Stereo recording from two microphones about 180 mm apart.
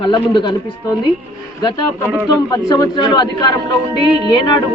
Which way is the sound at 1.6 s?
15° left (ahead or behind).